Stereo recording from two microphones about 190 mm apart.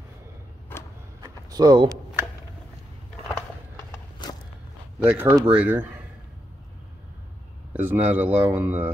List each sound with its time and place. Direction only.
1.5 s speech: 20° right (ahead or behind)
5.0 s speech: 10° right (ahead or behind)
7.7 s speech: 10° right (ahead or behind)